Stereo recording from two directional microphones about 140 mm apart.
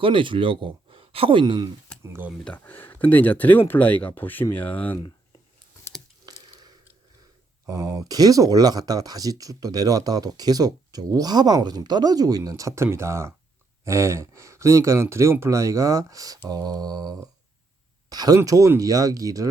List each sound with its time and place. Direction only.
0.0 s speech: 40° right (ahead or behind)
2.0 s speech: 15° right (ahead or behind)
2.4 s speech: 10° left (ahead or behind)
6.2 s a sound: 25° right (ahead or behind)
7.7 s speech: 25° right (ahead or behind)